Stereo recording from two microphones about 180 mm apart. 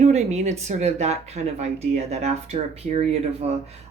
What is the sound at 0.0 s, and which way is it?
Speech, 40° right (ahead or behind).